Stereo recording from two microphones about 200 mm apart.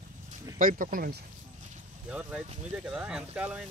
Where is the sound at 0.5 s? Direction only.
40° right (ahead or behind).